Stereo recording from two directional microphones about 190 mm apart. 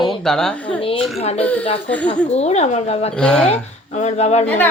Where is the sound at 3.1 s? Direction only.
5° left (ahead or behind).